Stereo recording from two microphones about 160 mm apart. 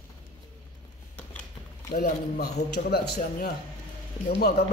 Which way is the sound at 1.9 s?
75° left (ahead or behind).